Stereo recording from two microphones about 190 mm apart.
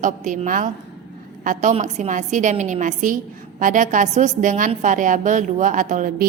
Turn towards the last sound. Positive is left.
turn(degrees=-45)  # may be behind; listen again after turning